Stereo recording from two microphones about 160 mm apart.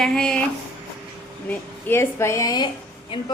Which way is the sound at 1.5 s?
15° left (ahead or behind).